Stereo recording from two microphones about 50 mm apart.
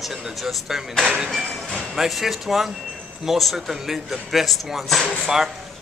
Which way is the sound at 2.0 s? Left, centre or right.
Centre.